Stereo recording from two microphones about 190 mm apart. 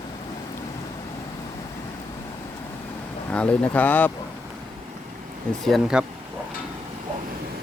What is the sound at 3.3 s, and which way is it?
Speech, 5° left (ahead or behind).